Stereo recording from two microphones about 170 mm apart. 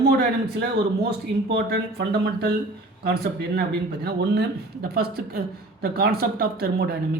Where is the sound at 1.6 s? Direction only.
75° right (ahead or behind).